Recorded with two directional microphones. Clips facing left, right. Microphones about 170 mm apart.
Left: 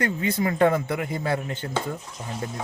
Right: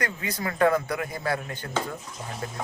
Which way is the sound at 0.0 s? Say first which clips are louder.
Left 6 dB; 25° left (ahead or behind).